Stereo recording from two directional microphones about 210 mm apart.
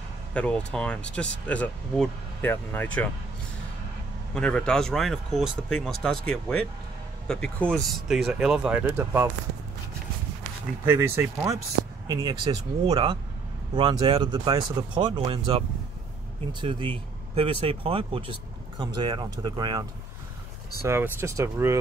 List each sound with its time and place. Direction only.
0.3 s speech: 5° left (ahead or behind)
4.4 s speech: 5° left (ahead or behind); by 9.3 s 10° right (ahead or behind)
10.9 s speech: 10° right (ahead or behind)
16.6 s speech: 25° right (ahead or behind)